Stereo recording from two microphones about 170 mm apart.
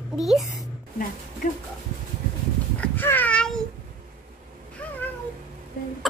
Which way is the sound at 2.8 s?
10° left (ahead or behind).